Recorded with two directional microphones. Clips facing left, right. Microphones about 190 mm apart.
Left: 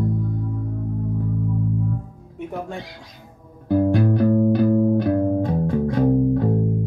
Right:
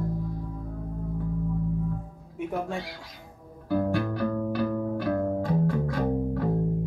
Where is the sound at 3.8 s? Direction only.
25° left (ahead or behind).